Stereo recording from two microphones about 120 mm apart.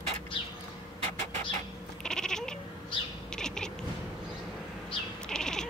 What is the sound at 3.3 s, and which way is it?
Insect, 5° left (ahead or behind).